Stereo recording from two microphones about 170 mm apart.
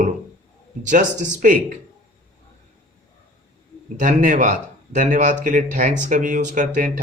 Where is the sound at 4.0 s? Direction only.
50° right (ahead or behind).